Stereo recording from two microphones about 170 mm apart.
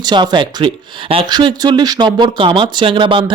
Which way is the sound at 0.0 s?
25° right (ahead or behind).